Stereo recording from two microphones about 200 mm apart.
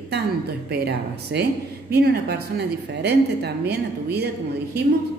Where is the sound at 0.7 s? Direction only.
55° right (ahead or behind).